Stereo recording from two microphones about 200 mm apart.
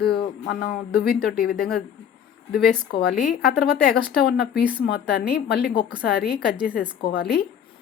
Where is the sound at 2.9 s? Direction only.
50° left (ahead or behind).